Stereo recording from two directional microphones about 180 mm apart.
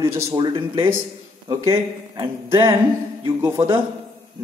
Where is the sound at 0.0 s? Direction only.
15° right (ahead or behind).